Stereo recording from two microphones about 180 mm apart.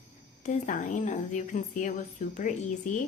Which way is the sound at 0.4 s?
45° left (ahead or behind).